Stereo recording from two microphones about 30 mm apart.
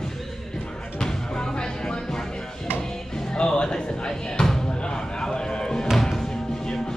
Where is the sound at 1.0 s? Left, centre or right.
Left.